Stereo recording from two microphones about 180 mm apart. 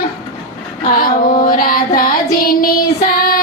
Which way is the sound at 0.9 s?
55° left (ahead or behind).